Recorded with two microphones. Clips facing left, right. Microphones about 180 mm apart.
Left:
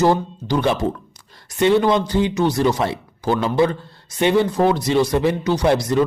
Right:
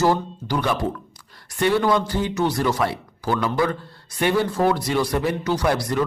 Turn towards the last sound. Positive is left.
turn(degrees=25)  # may be behind; listen again after turning